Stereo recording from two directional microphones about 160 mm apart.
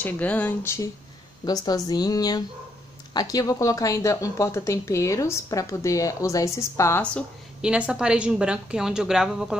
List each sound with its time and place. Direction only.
0.0 s speech: 10° left (ahead or behind)
7.6 s a woman's voice: 5° right (ahead or behind)